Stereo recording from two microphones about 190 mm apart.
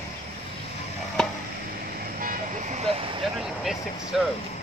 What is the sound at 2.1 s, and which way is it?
Vehicle, 45° right (ahead or behind).